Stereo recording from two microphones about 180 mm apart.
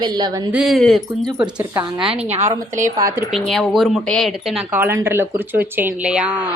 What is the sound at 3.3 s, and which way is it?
Speech, centre (ahead or behind).